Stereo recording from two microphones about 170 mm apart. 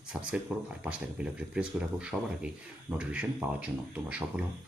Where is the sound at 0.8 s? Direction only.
5° right (ahead or behind).